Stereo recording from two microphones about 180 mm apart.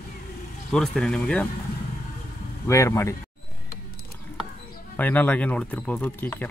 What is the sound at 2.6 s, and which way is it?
Speech, 15° left (ahead or behind).